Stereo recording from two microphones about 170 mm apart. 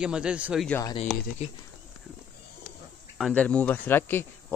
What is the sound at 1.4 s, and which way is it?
Speech, 40° left (ahead or behind).